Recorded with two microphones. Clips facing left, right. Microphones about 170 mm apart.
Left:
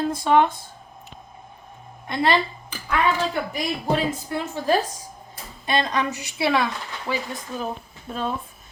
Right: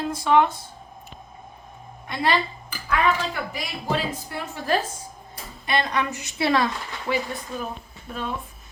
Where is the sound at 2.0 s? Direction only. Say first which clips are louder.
Left 2 dB; 25° left (ahead or behind).